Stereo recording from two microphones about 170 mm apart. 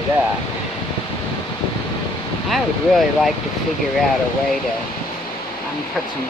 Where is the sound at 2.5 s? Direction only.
Centre (ahead or behind).